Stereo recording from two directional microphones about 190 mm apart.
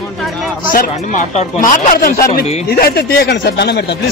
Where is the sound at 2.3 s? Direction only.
55° left (ahead or behind).